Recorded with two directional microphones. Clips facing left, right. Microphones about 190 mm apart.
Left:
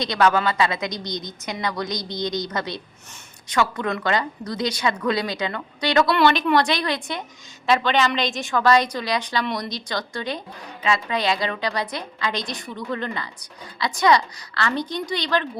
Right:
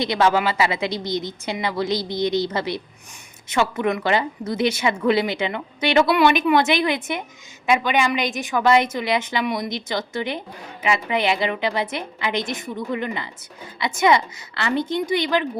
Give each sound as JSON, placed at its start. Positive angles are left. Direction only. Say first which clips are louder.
{"t": 0.0, "sound": "a woman's voice", "louder": "right 1 dB", "side_deg": -25}
{"t": 6.1, "sound": "speech", "louder": "right 1 dB", "side_deg": -10}
{"t": 6.6, "sound": "a woman's voice", "louder": "right 3 dB", "side_deg": -20}
{"t": 9.4, "sound": "speech", "louder": "right 2 dB", "side_deg": -5}
{"t": 9.9, "sound": "a woman's voice", "louder": "right 2 dB", "side_deg": -25}